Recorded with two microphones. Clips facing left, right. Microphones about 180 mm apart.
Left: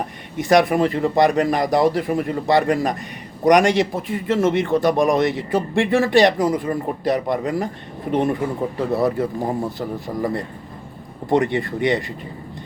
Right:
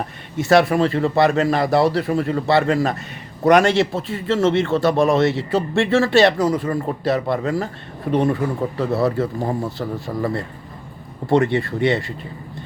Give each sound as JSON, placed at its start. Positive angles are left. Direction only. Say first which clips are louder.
{"t": 0.3, "sound": "a man's voice", "louder": "right 1 dB", "side_deg": 15}
{"t": 11.3, "sound": "a man's voice", "louder": "right 1 dB", "side_deg": 15}